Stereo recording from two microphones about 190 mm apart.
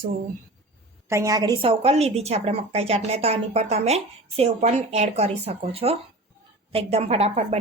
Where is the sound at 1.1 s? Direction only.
15° right (ahead or behind).